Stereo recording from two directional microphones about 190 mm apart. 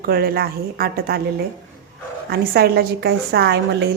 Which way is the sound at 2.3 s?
55° right (ahead or behind).